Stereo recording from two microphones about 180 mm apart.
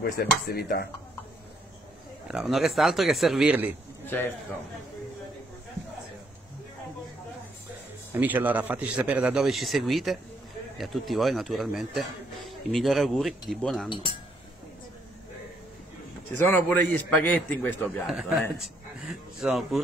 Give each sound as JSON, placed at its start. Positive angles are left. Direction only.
{"t": 0.0, "sound": "speech", "side_deg": 60}
{"t": 2.3, "sound": "speech", "side_deg": 0}
{"t": 4.0, "sound": "a man's voice", "side_deg": 10}
{"t": 8.1, "sound": "speech", "side_deg": -10}
{"t": 16.4, "sound": "a man's voice", "side_deg": 10}
{"t": 17.8, "sound": "speech", "side_deg": 0}